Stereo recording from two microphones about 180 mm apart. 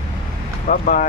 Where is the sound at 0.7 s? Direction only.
50° left (ahead or behind).